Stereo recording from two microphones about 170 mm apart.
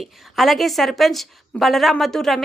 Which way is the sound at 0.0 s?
Centre (ahead or behind).